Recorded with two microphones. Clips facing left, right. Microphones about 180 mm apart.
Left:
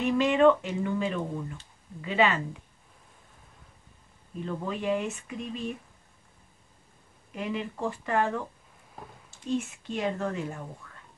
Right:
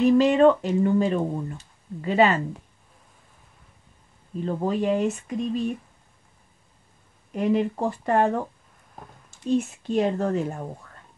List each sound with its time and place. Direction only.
0.0 s speech: 35° right (ahead or behind)
4.5 s speech: 40° right (ahead or behind)
7.3 s speech: 40° right (ahead or behind)
9.6 s speech: 40° right (ahead or behind)